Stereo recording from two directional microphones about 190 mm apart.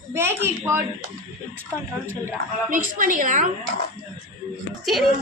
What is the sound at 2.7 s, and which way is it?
Speech, 45° right (ahead or behind).